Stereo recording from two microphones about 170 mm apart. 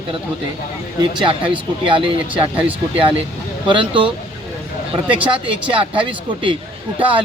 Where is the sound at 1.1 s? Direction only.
30° right (ahead or behind).